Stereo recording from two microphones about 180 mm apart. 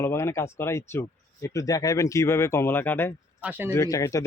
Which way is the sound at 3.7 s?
15° left (ahead or behind).